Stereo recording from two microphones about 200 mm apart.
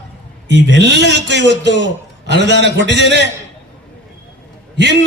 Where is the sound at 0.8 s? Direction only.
60° right (ahead or behind).